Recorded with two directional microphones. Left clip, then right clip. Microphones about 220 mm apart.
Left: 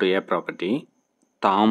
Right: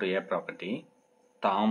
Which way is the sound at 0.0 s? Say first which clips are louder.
Left 8 dB; 50° left (ahead or behind).